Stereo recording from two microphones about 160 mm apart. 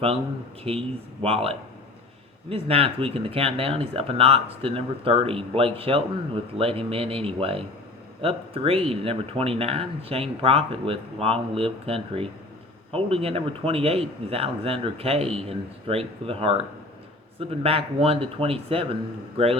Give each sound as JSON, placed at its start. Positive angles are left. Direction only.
{"t": 0.6, "sound": "speech", "side_deg": -35}